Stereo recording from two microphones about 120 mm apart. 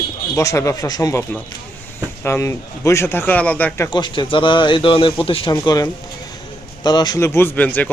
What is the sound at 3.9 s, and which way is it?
Speech, 40° left (ahead or behind).